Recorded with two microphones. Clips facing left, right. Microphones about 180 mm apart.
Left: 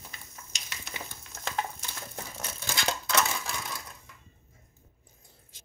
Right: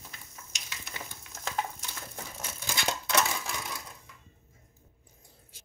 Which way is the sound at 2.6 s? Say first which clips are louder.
Left 1 dB; 15° right (ahead or behind).